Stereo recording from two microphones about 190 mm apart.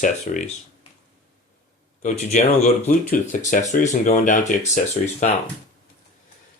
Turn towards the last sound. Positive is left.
turn(degrees=35)  # may be behind; listen again after turning